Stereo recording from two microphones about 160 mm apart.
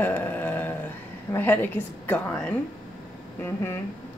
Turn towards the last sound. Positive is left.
turn(degrees=15)  # may be behind; listen again after turning